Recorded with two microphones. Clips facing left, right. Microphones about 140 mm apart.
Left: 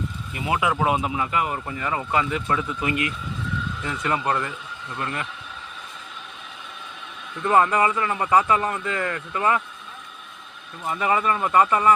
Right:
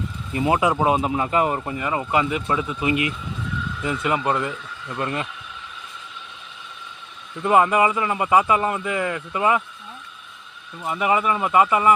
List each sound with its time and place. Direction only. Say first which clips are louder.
0.3 s speech: right 4 dB; 35° right (ahead or behind)
7.4 s speech: right 2 dB; 15° right (ahead or behind)
10.8 s speech: right 1 dB; 10° right (ahead or behind)